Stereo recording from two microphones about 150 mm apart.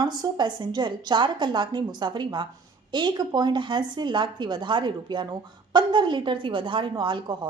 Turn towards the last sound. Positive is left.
turn(degrees=-30)  # may be behind; listen again after turning